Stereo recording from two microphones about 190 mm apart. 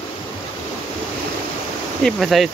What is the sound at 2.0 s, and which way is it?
Speech, centre (ahead or behind).